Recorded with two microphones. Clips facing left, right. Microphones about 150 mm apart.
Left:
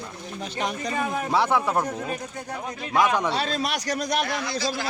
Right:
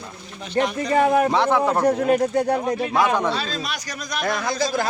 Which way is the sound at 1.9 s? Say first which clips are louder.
Right 13 dB; 65° right (ahead or behind).